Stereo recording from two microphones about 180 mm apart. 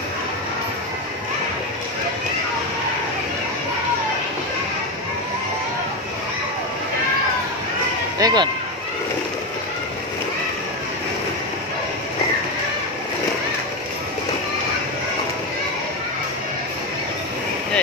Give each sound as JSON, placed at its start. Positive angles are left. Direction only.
{"t": 8.2, "sound": "speech", "side_deg": -20}